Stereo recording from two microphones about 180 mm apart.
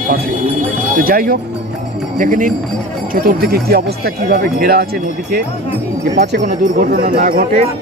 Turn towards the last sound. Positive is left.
turn(degrees=-55)  # may be behind; listen again after turning